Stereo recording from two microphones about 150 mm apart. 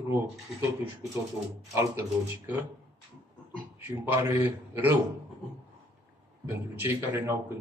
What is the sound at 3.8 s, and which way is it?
A man's voice, 15° right (ahead or behind).